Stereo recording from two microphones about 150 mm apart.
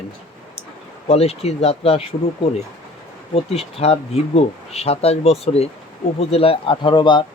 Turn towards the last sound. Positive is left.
turn(degrees=30)  # may be behind; listen again after turning